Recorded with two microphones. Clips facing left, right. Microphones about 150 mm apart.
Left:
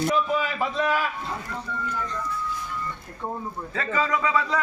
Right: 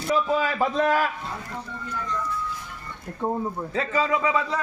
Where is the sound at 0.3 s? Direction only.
40° right (ahead or behind).